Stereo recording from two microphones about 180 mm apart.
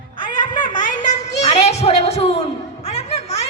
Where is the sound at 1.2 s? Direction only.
35° left (ahead or behind).